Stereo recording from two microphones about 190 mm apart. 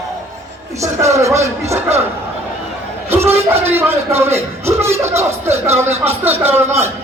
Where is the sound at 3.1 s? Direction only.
10° right (ahead or behind).